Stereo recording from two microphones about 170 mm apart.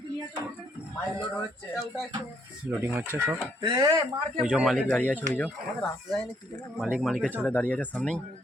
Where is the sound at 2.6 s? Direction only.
10° right (ahead or behind).